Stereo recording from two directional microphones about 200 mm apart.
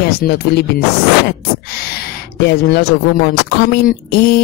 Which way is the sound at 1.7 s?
50° left (ahead or behind).